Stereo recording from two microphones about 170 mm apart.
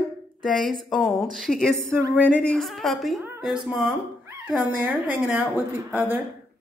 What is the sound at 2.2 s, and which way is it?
Speech, 5° left (ahead or behind).